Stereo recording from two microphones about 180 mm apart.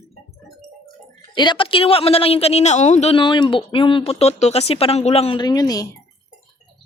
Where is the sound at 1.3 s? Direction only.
25° left (ahead or behind).